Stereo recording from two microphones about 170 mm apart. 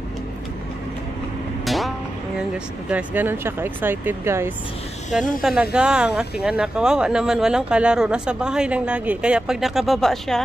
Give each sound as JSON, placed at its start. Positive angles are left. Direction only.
{"t": 1.6, "sound": "vehicle", "side_deg": 0}
{"t": 2.5, "sound": "speech", "side_deg": -10}
{"t": 5.1, "sound": "speech", "side_deg": 0}